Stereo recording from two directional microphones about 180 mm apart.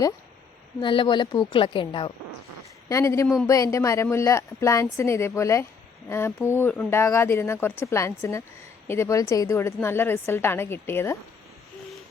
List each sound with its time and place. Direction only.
0.8 s a woman's voice: 25° left (ahead or behind)
2.9 s a woman's voice: 15° left (ahead or behind)